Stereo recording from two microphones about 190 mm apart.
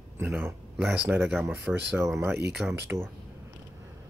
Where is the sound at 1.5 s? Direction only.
10° right (ahead or behind).